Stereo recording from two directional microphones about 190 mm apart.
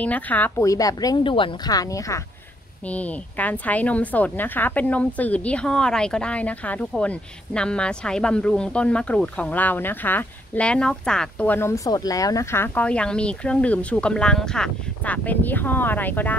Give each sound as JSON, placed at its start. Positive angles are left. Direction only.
{"t": 0.0, "sound": "a woman's voice", "side_deg": 10}